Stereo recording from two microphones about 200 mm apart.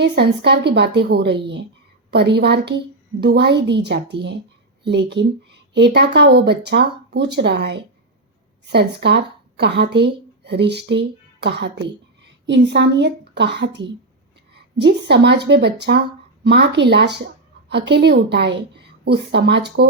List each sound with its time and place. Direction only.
0.0 s a woman's voice: 55° right (ahead or behind)